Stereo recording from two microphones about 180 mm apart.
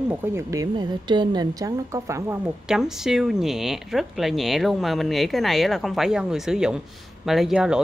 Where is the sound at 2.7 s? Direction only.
Centre (ahead or behind).